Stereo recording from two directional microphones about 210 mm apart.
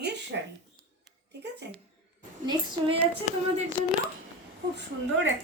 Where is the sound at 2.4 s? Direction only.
20° right (ahead or behind).